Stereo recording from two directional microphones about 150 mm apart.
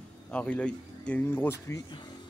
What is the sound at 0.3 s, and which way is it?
Speech, 10° left (ahead or behind).